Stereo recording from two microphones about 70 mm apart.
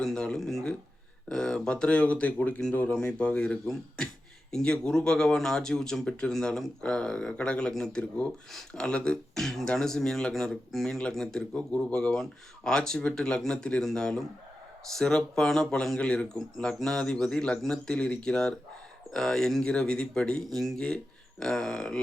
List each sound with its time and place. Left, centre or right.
0.0 s speech: centre